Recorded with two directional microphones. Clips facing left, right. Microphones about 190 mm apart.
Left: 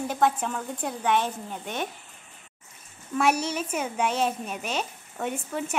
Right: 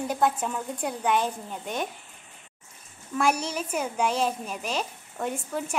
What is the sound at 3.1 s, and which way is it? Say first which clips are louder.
A child's voice: left 1 dB; 5° left (ahead or behind).